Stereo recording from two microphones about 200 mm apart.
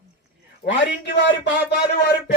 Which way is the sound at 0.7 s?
60° left (ahead or behind).